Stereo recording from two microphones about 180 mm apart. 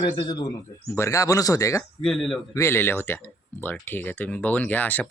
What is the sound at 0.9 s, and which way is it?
Speech, 15° left (ahead or behind).